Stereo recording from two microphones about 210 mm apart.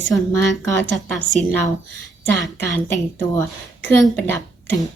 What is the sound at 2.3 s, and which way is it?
A woman's voice, 10° left (ahead or behind).